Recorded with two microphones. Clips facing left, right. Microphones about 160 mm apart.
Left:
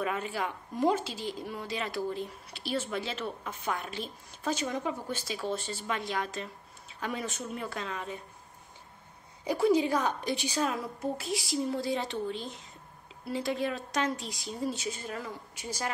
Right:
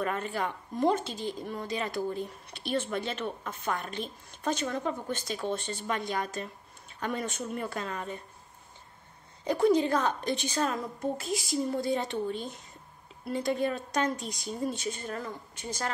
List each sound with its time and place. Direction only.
0.0 s a woman's voice: 5° left (ahead or behind)
2.1 s speech: 50° right (ahead or behind)
2.7 s a woman's voice: 5° left (ahead or behind)
9.4 s a woman's voice: 10° left (ahead or behind)
12.1 s speech: 50° right (ahead or behind)
13.4 s a woman's voice: centre (ahead or behind)